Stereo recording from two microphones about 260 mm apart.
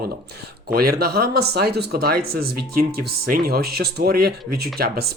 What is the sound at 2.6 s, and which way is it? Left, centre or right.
Speech, right.